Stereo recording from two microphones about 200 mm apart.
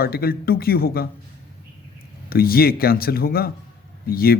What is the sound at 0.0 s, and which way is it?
A man's voice, 50° left (ahead or behind).